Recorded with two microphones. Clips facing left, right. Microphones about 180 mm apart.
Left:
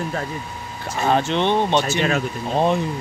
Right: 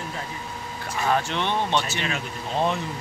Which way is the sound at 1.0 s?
25° left (ahead or behind).